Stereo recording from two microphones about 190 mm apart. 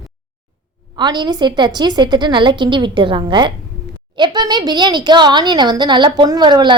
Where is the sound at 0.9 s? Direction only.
25° right (ahead or behind).